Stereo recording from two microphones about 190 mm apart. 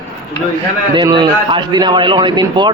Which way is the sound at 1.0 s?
25° right (ahead or behind).